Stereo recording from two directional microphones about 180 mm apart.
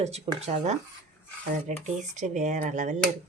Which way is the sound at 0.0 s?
35° right (ahead or behind).